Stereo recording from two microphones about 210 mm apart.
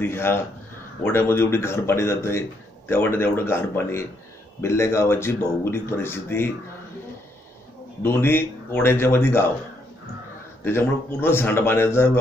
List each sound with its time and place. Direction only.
0.0 s speech: 10° left (ahead or behind)
8.0 s speech: 10° left (ahead or behind)
10.6 s speech: 10° left (ahead or behind)